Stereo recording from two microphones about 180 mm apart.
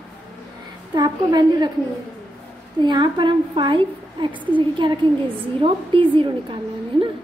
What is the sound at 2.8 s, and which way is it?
A woman's voice, 25° right (ahead or behind).